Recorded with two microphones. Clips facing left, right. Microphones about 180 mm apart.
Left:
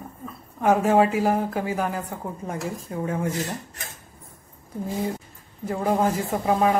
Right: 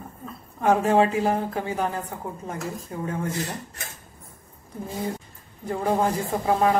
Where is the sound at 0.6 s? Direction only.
5° left (ahead or behind).